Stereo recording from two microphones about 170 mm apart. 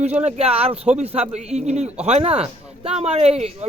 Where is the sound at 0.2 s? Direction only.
40° right (ahead or behind).